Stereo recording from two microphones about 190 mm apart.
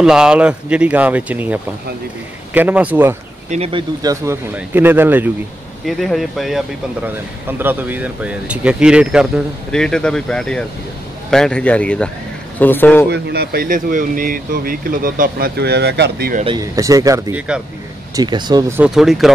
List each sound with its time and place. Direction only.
0.0 s speech: 5° right (ahead or behind)
3.4 s speech: 35° right (ahead or behind)
4.0 s speech: 15° right (ahead or behind)
5.9 s speech: centre (ahead or behind)
13.1 s speech: 60° right (ahead or behind)
16.4 s speech: 20° right (ahead or behind)
18.8 s speech: centre (ahead or behind)